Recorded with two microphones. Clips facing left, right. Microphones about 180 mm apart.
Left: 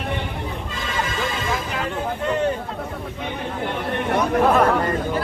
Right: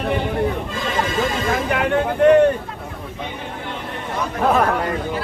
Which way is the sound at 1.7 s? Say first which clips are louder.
Right 7 dB; 65° right (ahead or behind).